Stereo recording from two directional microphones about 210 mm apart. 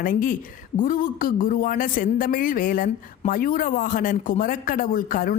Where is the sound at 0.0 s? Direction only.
40° left (ahead or behind).